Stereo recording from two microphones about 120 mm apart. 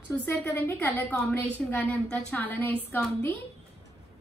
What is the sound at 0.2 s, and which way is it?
A woman's voice, 20° left (ahead or behind).